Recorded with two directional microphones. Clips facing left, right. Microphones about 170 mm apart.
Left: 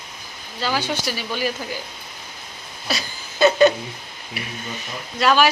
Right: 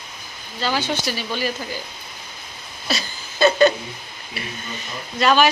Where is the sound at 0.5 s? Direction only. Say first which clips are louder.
Right 1 dB; 10° left (ahead or behind).